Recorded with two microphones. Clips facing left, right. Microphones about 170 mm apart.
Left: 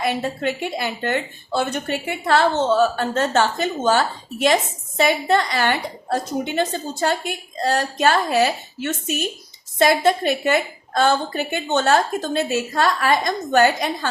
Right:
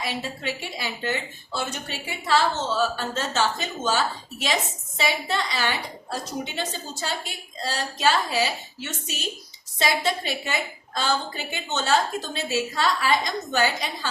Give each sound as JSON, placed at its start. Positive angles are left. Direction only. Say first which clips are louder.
{"t": 0.0, "sound": "a woman's voice", "louder": "left 8 dB", "side_deg": 55}